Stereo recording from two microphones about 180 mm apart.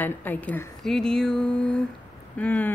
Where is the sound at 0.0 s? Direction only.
10° left (ahead or behind).